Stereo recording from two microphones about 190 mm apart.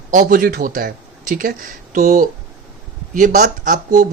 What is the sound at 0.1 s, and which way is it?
Speech, 45° right (ahead or behind).